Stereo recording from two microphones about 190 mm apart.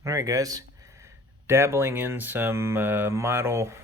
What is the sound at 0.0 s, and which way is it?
Speech, 15° right (ahead or behind).